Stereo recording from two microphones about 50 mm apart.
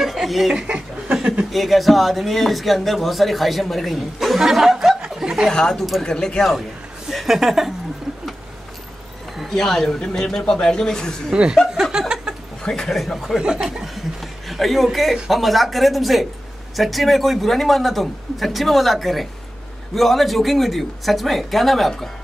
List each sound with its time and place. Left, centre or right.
0.0 s speech: centre
0.7 s chuckle: right
1.1 s a sound: centre
1.5 s speech: centre
5.5 s speech: centre
7.1 s speech: centre
9.4 s speech: centre
9.8 s speech: centre
11.7 s chuckle: centre
12.6 s speech: centre
14.5 s speech: centre